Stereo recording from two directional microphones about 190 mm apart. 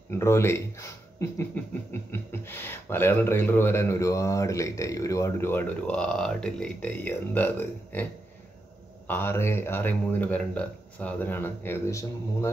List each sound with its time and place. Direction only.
0.1 s speech: 15° left (ahead or behind)